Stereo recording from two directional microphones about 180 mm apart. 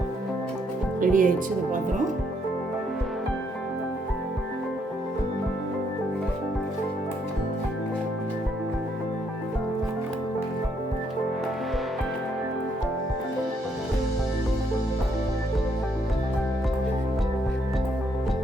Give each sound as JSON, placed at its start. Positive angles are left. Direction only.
{"t": 1.0, "sound": "speech", "side_deg": -50}